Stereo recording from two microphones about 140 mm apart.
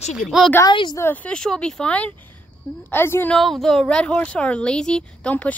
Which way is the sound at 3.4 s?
Centre (ahead or behind).